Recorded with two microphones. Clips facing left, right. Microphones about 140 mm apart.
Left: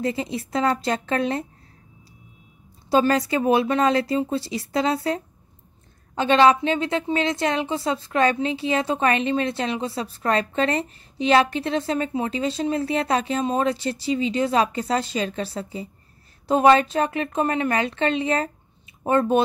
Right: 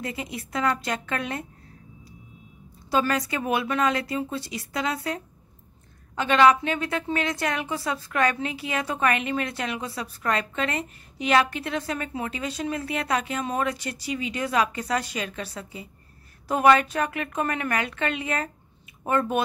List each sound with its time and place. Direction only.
0.0 s a woman's voice: 30° left (ahead or behind)
2.9 s a woman's voice: 30° left (ahead or behind)